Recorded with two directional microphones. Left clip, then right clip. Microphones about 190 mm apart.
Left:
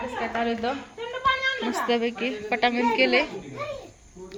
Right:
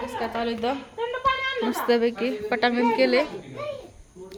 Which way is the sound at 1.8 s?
20° right (ahead or behind).